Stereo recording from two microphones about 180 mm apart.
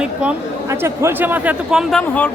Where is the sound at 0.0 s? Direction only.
5° right (ahead or behind).